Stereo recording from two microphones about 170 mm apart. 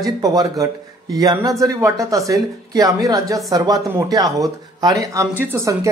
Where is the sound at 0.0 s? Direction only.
20° right (ahead or behind).